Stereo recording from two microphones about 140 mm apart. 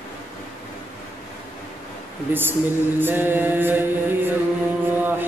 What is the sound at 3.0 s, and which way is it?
Mantra, 15° right (ahead or behind).